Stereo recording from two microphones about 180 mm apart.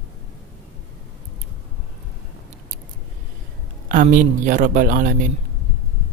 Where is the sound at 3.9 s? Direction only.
45° right (ahead or behind).